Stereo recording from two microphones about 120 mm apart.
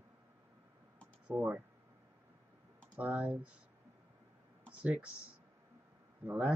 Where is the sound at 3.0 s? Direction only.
10° right (ahead or behind).